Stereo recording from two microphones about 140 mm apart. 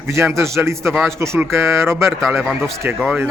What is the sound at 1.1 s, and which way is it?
Speech, 20° right (ahead or behind).